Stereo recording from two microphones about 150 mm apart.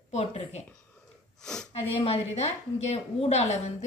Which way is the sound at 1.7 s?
45° left (ahead or behind).